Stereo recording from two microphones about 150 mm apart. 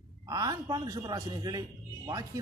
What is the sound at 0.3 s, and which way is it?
Speech, 25° right (ahead or behind).